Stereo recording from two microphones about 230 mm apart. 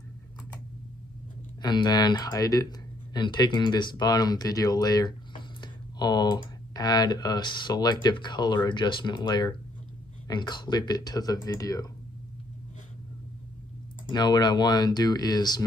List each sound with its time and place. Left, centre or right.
1.6 s speech: centre
14.1 s speech: centre